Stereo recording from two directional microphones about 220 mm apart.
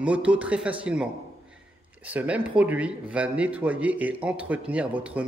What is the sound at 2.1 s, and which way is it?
Speech, 5° right (ahead or behind).